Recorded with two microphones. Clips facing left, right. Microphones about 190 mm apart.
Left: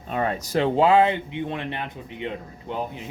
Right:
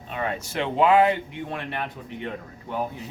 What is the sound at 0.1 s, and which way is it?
Speech, 40° left (ahead or behind).